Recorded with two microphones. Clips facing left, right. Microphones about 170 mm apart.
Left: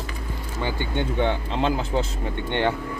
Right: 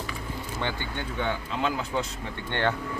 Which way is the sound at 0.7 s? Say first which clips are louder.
Left 7 dB; 25° left (ahead or behind).